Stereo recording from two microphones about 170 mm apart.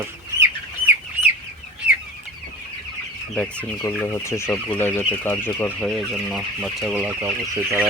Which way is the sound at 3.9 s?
15° left (ahead or behind).